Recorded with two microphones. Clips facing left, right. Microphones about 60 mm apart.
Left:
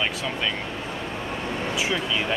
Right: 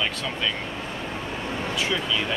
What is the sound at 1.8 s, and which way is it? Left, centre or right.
Speech, centre.